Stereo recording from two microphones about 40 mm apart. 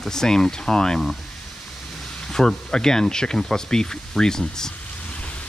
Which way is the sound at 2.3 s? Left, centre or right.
Centre.